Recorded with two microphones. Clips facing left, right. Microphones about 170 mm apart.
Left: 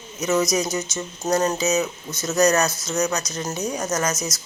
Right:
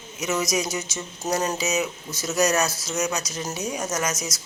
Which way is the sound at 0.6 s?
25° left (ahead or behind).